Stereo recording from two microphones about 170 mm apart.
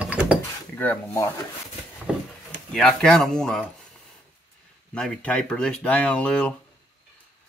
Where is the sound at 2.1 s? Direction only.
5° right (ahead or behind).